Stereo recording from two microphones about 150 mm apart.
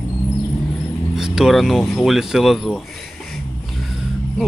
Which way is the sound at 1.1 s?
5° right (ahead or behind).